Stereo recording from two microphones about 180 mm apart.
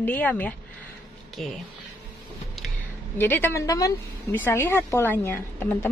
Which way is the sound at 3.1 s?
10° left (ahead or behind).